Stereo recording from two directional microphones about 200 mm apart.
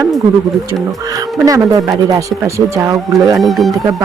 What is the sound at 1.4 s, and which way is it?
Speech, 15° right (ahead or behind).